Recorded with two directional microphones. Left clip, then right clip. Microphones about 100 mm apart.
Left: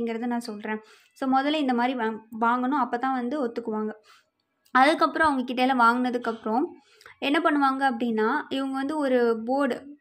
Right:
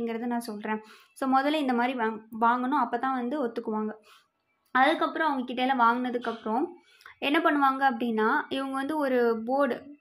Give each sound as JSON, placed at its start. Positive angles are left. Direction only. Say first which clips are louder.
{"t": 0.0, "sound": "a woman's voice", "louder": "left 2 dB", "side_deg": 25}
{"t": 4.7, "sound": "a woman's voice", "louder": "left 4 dB", "side_deg": 45}